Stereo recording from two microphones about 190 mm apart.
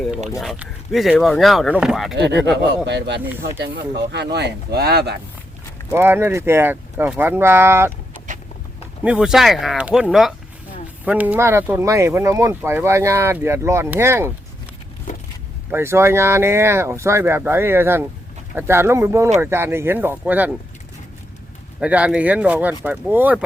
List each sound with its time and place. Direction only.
0.3 s speech: centre (ahead or behind)
2.1 s speech: 65° right (ahead or behind)
5.9 s speech: 10° right (ahead or behind)
9.0 s speech: 5° right (ahead or behind)
15.7 s speech: 15° right (ahead or behind)
21.8 s speech: 5° right (ahead or behind)